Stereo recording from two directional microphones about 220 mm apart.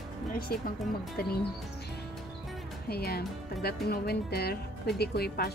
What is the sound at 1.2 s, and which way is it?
Speech, 45° left (ahead or behind).